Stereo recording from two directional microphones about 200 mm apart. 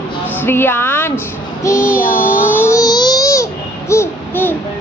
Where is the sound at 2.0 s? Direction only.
45° left (ahead or behind).